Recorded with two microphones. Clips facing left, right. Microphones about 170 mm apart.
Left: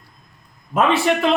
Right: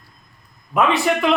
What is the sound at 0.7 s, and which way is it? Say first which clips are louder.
Speech: left 1 dB; 40° left (ahead or behind).